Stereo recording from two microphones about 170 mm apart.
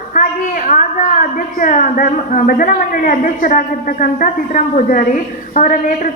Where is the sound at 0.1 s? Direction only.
50° left (ahead or behind).